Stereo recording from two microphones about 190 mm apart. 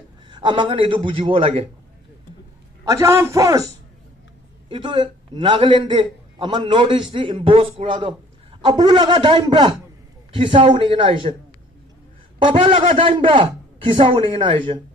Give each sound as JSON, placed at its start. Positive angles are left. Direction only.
{"t": 0.3, "sound": "a man's voice", "side_deg": -25}
{"t": 2.8, "sound": "a man's voice", "side_deg": -15}
{"t": 4.6, "sound": "a man's voice", "side_deg": -25}
{"t": 12.4, "sound": "a man's voice", "side_deg": -25}